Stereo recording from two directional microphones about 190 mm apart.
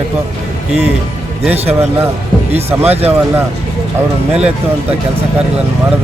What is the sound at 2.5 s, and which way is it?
Speech, 30° right (ahead or behind).